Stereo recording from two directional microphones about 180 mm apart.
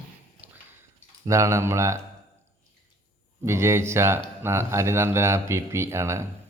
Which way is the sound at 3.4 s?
15° right (ahead or behind).